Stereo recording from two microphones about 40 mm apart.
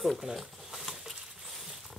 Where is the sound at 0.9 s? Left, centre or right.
Centre.